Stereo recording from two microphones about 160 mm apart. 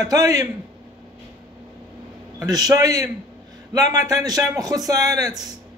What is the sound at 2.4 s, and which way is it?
Speech, 25° right (ahead or behind).